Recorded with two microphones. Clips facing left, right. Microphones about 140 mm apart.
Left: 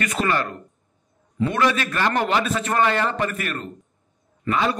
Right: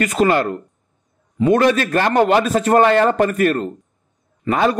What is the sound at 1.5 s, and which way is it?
A man's voice, 45° right (ahead or behind).